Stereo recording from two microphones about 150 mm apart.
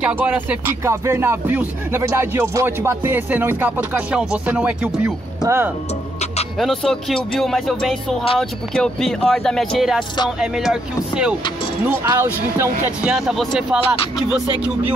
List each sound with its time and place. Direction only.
0.0 s speech: 10° right (ahead or behind)
6.6 s speech: centre (ahead or behind)
11.8 s speech: 15° right (ahead or behind)
13.0 s speech: 5° right (ahead or behind)